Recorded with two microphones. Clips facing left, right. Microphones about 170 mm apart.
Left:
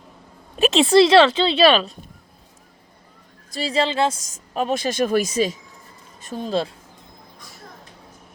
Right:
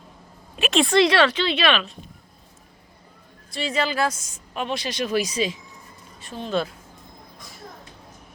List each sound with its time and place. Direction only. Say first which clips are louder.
0.7 s speech: left 5 dB; 25° left (ahead or behind)
3.5 s speech: left 3 dB; 35° left (ahead or behind)
4.2 s speech: left 5 dB; 40° left (ahead or behind)